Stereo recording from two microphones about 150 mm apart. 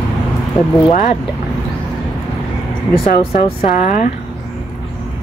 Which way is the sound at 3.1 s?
65° left (ahead or behind).